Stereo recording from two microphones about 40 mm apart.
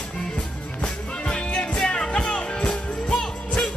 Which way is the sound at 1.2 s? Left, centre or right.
Left.